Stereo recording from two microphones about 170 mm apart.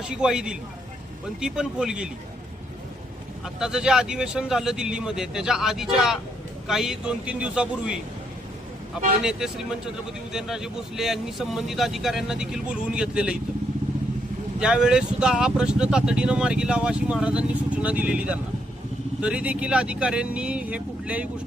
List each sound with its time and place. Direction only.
0.0 s speech: 5° right (ahead or behind)
3.4 s speech: 5° right (ahead or behind)
9.2 s speech: 5° right (ahead or behind)
14.6 s speech: 5° right (ahead or behind)